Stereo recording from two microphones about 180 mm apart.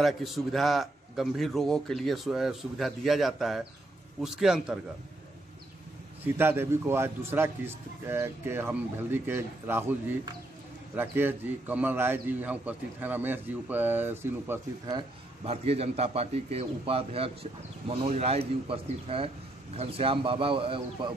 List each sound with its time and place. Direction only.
0.0 s a man's voice: centre (ahead or behind)
6.2 s a man's voice: 10° right (ahead or behind)
15.0 s a man's voice: 35° right (ahead or behind)